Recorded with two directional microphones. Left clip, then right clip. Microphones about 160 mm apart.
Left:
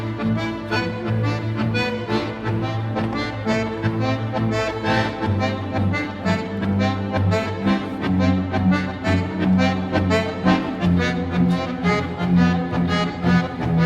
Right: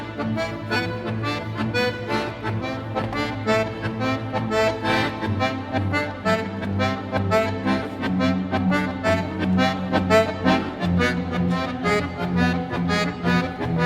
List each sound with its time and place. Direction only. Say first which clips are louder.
1.5 s music: even; 30° right (ahead or behind)
3.2 s music: right 4 dB; 30° right (ahead or behind)